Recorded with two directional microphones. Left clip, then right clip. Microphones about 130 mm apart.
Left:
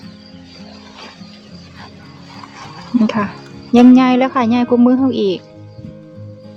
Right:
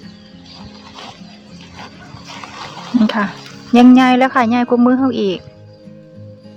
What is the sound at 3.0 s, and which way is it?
A woman's voice, 5° left (ahead or behind).